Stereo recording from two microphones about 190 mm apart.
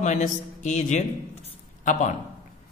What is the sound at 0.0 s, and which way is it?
A man's voice, 40° left (ahead or behind).